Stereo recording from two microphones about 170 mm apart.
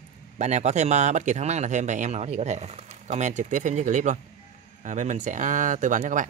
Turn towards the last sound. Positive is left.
turn(degrees=-50)  # may be behind; listen again after turning